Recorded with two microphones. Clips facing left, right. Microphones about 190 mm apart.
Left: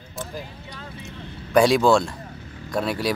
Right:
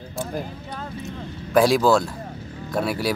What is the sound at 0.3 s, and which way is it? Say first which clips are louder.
Speech: right 6 dB; 50° right (ahead or behind).